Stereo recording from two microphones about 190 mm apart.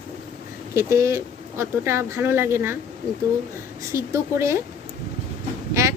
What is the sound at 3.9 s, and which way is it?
Speech, 15° right (ahead or behind).